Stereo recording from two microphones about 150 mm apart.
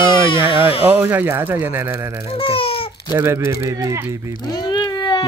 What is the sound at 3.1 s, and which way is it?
Speech, 20° right (ahead or behind).